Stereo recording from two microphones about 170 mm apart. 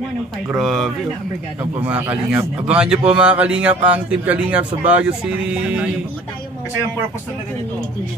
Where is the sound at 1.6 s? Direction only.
10° right (ahead or behind).